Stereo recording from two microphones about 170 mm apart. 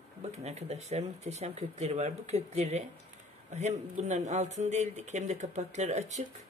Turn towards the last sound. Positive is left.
turn(degrees=-40)  # may be behind; listen again after turning